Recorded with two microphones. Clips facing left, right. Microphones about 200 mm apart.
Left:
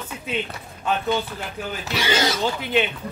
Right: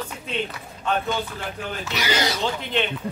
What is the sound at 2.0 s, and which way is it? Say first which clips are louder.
Speech: left 2 dB; 25° left (ahead or behind).